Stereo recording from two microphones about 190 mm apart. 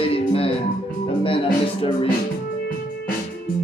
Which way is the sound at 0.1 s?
30° left (ahead or behind).